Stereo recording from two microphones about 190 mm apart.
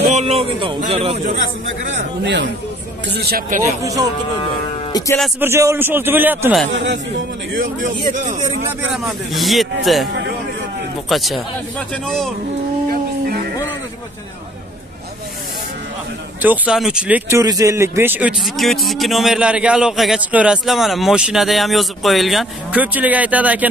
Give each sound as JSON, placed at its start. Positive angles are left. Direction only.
{"t": 0.1, "sound": "a sound", "side_deg": -35}
{"t": 0.8, "sound": "speech", "side_deg": -30}
{"t": 1.9, "sound": "a man's voice", "side_deg": -70}
{"t": 3.2, "sound": "a man's voice", "side_deg": -55}
{"t": 3.8, "sound": "a man's voice", "side_deg": -20}
{"t": 4.9, "sound": "speech", "side_deg": 15}
{"t": 5.4, "sound": "a man's voice", "side_deg": -15}
{"t": 7.8, "sound": "a man's voice", "side_deg": -45}
{"t": 8.9, "sound": "speech", "side_deg": 0}
{"t": 11.1, "sound": "speech", "side_deg": 0}
{"t": 12.9, "sound": "a sound", "side_deg": -50}
{"t": 16.4, "sound": "speech", "side_deg": -5}